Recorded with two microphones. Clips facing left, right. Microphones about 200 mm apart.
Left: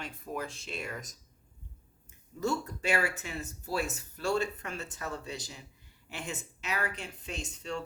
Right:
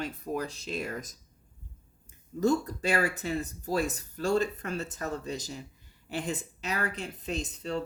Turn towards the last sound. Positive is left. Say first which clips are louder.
# right 5 dB
turn(degrees=-35)  # may be behind; listen again after turning